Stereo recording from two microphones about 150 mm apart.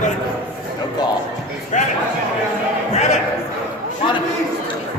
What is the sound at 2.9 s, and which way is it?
Speech, 50° left (ahead or behind).